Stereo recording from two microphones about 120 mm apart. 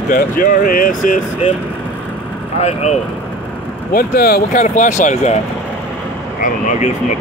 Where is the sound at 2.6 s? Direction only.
65° left (ahead or behind).